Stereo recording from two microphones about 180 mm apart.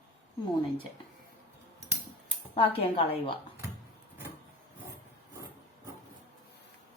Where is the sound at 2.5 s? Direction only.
30° left (ahead or behind).